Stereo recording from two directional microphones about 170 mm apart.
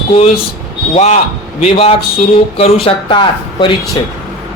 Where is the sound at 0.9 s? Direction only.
40° left (ahead or behind).